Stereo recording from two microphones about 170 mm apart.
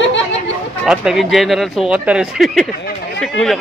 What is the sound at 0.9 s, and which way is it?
Speech, centre (ahead or behind).